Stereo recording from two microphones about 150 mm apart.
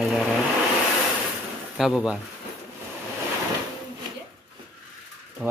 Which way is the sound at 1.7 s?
5° right (ahead or behind).